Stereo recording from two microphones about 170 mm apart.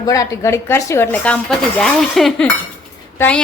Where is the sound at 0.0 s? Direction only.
20° left (ahead or behind).